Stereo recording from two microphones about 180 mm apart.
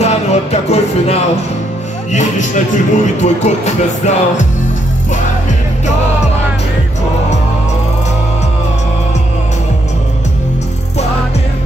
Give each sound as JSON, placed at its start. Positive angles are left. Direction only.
{"t": 0.0, "sound": "music", "side_deg": 35}
{"t": 2.1, "sound": "speech", "side_deg": 45}